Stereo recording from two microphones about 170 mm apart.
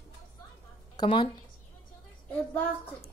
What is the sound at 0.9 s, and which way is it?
Speech, 25° left (ahead or behind).